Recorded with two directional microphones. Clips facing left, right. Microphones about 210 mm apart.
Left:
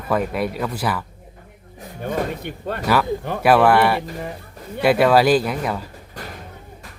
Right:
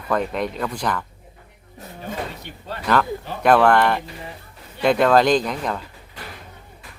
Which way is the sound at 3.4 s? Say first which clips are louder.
Left 1 dB; 5° left (ahead or behind).